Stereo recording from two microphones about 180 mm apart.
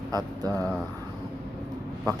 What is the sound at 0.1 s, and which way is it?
Speech, 20° right (ahead or behind).